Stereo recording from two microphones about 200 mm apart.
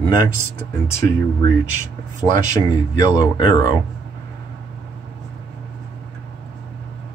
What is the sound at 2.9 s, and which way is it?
Speech, 20° left (ahead or behind).